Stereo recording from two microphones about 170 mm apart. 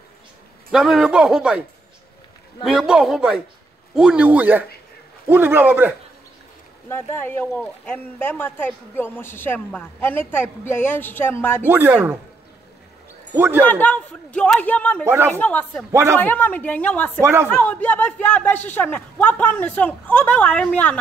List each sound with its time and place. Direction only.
0.7 s a man's voice: 5° right (ahead or behind)
2.6 s a man's voice: 5° right (ahead or behind)
6.9 s speech: 15° left (ahead or behind)
11.6 s a man's voice: 10° right (ahead or behind)
13.3 s speech: 15° right (ahead or behind)
13.6 s speech: 10° left (ahead or behind)
15.0 s a man's voice: 15° right (ahead or behind)
15.3 s speech: 10° left (ahead or behind)
15.9 s a man's voice: 15° right (ahead or behind)
16.2 s speech: 10° left (ahead or behind)
17.2 s a man's voice: 15° right (ahead or behind)
17.5 s speech: 10° left (ahead or behind)